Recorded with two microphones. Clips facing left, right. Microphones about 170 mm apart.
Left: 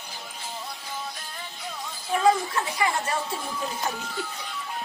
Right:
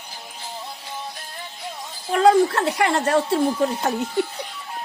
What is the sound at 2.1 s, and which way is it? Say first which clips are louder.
Speech: right 7 dB; 70° right (ahead or behind).